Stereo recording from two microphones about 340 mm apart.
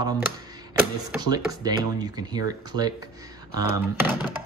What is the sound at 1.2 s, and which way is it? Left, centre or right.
Speech, centre.